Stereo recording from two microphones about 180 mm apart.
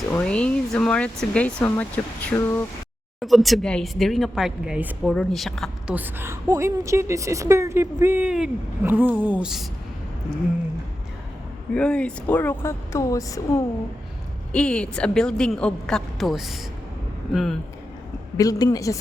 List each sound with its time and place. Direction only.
0.1 s speech: 5° left (ahead or behind)
3.2 s a woman's voice: centre (ahead or behind)
5.9 s a woman's voice: 10° right (ahead or behind)
11.7 s speech: 5° left (ahead or behind)
14.5 s a woman's voice: 5° left (ahead or behind)
18.3 s a woman's voice: 20° left (ahead or behind)